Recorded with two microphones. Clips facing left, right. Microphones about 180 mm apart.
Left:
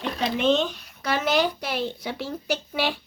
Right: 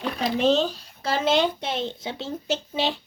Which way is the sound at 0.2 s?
35° right (ahead or behind).